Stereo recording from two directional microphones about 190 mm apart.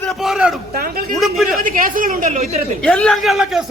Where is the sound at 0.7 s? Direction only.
50° right (ahead or behind).